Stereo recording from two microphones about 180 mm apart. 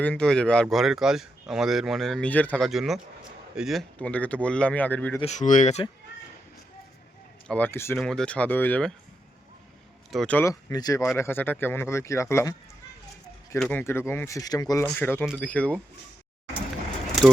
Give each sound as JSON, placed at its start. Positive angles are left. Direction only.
{"t": 0.0, "sound": "speech", "side_deg": 5}
{"t": 5.2, "sound": "speech", "side_deg": 40}
{"t": 7.4, "sound": "speech", "side_deg": 10}
{"t": 7.9, "sound": "speech", "side_deg": 5}
{"t": 10.1, "sound": "speech", "side_deg": 5}
{"t": 13.6, "sound": "speech", "side_deg": 10}